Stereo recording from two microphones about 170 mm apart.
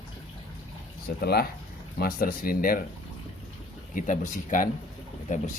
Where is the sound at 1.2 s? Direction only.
70° left (ahead or behind).